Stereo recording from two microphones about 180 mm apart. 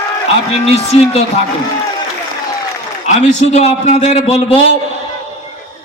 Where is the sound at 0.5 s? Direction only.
35° left (ahead or behind).